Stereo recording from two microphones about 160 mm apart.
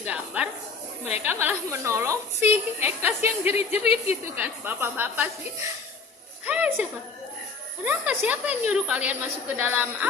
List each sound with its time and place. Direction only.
0.0 s a woman's voice: 5° right (ahead or behind)
3.5 s speech: 40° left (ahead or behind)
4.4 s a woman's voice: 10° right (ahead or behind)
6.4 s a sound: 10° right (ahead or behind)
7.9 s a woman's voice: 10° right (ahead or behind)